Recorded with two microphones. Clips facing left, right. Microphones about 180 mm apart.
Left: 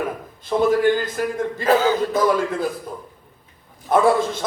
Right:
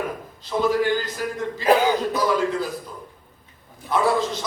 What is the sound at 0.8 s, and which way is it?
Speech, 50° left (ahead or behind).